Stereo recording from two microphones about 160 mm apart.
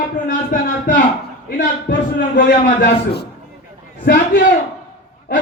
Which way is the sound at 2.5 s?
75° left (ahead or behind).